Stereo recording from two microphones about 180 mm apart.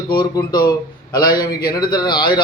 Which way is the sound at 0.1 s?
25° left (ahead or behind).